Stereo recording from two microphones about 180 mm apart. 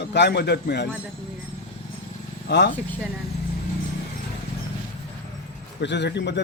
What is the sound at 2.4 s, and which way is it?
Speech, 70° left (ahead or behind).